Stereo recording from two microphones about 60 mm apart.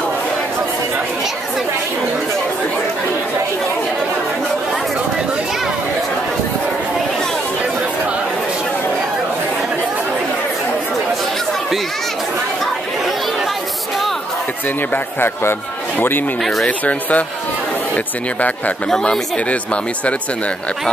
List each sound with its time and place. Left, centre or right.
15.1 s a man's voice: left
16.6 s speech: left
18.9 s speech: centre